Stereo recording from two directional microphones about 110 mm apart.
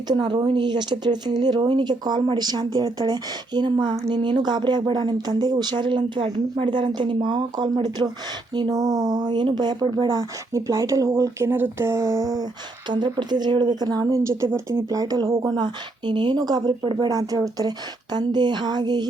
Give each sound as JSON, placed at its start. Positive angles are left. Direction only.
{"t": 0.1, "sound": "speech", "side_deg": -40}
{"t": 17.1, "sound": "speech", "side_deg": -35}